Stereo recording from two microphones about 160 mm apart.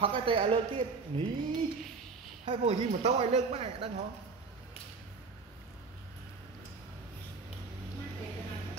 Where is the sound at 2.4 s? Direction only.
35° right (ahead or behind).